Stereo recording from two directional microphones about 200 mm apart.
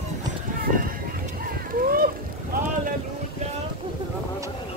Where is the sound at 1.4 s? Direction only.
45° right (ahead or behind).